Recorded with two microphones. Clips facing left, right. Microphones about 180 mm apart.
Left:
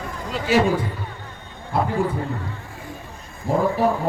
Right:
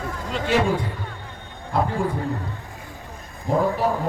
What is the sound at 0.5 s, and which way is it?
Speech, 5° left (ahead or behind).